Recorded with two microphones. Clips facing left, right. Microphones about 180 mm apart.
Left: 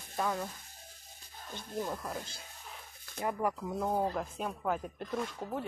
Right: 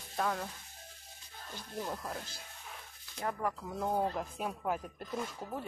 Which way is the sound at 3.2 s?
10° left (ahead or behind).